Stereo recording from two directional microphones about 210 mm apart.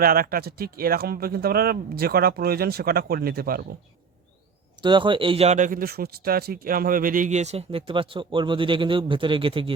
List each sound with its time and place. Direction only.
0.0 s speech: 45° right (ahead or behind)
4.8 s speech: 20° right (ahead or behind)